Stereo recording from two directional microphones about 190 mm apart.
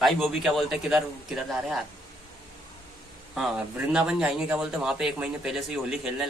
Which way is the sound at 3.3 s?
Centre (ahead or behind).